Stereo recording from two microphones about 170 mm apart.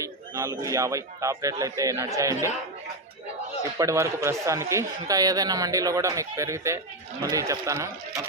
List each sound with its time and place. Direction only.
0.0 s speech: 20° right (ahead or behind)
3.8 s speech: 20° right (ahead or behind)